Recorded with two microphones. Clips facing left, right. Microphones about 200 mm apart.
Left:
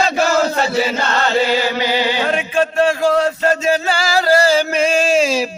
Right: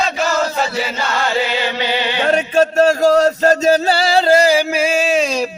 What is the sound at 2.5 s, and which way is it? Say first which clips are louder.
Music: right 3 dB; 40° right (ahead or behind).